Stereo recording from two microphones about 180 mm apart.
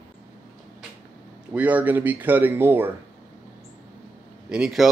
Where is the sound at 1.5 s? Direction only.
10° right (ahead or behind).